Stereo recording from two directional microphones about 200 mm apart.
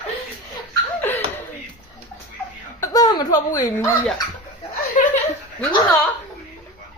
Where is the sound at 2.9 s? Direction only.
20° left (ahead or behind).